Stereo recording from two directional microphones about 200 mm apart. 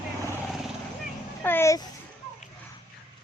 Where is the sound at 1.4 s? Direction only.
10° left (ahead or behind).